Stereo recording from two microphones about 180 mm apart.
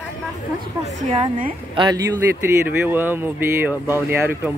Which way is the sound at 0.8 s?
35° right (ahead or behind).